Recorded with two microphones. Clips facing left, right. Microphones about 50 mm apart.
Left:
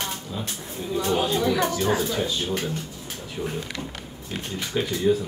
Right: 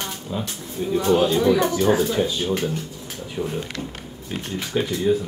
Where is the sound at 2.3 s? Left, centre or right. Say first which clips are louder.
Right 3 dB; centre.